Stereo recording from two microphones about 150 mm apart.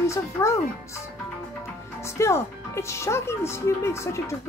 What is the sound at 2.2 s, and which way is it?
Speech, 20° left (ahead or behind).